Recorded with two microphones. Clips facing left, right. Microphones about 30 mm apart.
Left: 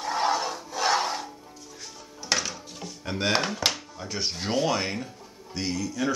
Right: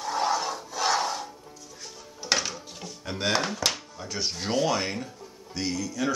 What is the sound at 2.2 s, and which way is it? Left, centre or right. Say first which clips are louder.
Drawer open or close: right 1 dB; centre.